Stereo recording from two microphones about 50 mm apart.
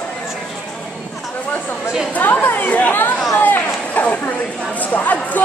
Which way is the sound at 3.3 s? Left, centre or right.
Left.